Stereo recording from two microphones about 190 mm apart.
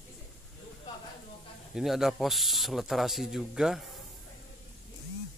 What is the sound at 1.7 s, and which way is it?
Speech, centre (ahead or behind).